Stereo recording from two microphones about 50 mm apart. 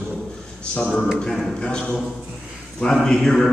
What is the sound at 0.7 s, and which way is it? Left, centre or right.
A man's voice, left.